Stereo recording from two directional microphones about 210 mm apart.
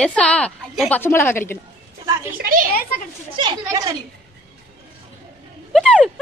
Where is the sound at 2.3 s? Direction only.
40° right (ahead or behind).